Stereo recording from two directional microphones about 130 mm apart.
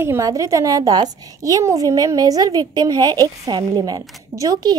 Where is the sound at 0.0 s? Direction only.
20° right (ahead or behind).